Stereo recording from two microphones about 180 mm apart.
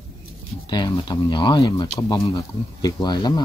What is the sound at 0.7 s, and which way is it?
Speech, 20° left (ahead or behind).